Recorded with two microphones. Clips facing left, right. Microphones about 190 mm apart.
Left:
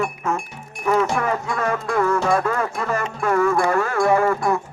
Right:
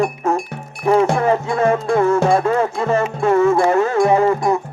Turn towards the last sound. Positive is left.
turn(degrees=-20)  # may be behind; listen again after turning